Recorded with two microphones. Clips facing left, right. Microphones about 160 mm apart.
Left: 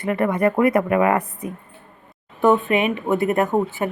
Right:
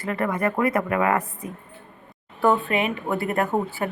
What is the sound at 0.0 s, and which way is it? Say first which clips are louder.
A woman's voice: left 5 dB; 20° left (ahead or behind).